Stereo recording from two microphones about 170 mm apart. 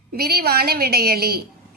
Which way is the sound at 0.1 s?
65° right (ahead or behind).